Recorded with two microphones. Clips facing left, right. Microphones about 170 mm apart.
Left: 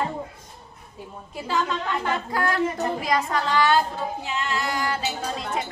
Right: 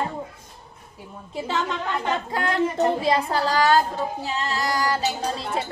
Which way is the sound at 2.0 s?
25° right (ahead or behind).